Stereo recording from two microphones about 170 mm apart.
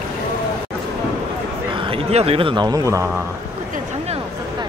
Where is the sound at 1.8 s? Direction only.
35° right (ahead or behind); by 3.1 s 20° right (ahead or behind).